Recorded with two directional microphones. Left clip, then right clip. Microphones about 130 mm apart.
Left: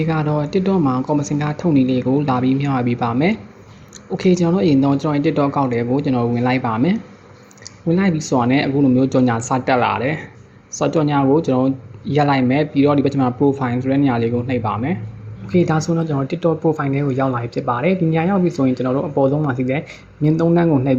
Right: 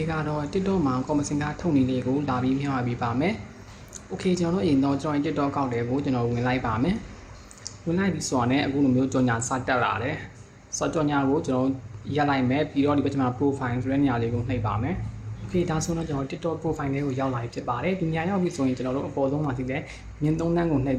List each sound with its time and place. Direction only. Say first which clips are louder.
0.0 s speech: left 8 dB; 35° left (ahead or behind)